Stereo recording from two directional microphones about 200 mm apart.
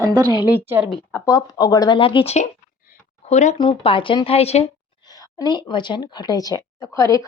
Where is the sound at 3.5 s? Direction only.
25° left (ahead or behind).